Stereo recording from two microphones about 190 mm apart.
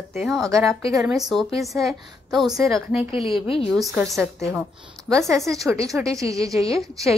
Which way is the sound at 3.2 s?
30° left (ahead or behind).